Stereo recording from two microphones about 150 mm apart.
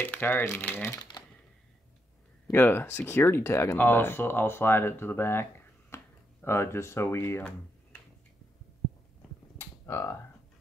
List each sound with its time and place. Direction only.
0.0 s speech: 15° left (ahead or behind)
2.5 s speech: 15° left (ahead or behind)
9.6 s a sound: 15° left (ahead or behind)